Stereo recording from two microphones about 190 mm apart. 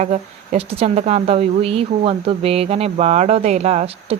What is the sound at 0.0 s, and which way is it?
A woman's voice, 35° right (ahead or behind).